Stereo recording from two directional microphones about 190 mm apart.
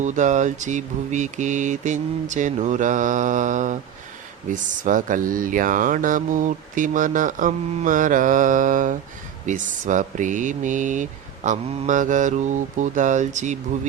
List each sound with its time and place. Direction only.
0.0 s speech: 40° right (ahead or behind)